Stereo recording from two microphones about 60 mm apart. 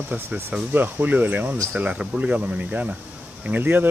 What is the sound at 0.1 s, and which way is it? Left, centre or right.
Speech, right.